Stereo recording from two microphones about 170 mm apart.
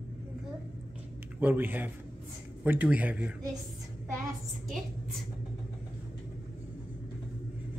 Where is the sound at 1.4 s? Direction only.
10° right (ahead or behind).